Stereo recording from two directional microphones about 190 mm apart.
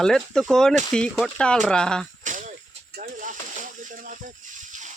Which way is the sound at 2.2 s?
40° right (ahead or behind).